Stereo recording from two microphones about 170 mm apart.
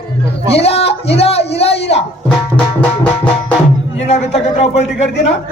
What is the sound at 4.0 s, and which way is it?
Speech, 40° left (ahead or behind).